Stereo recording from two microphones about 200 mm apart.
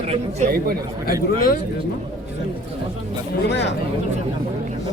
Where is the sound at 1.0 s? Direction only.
45° left (ahead or behind).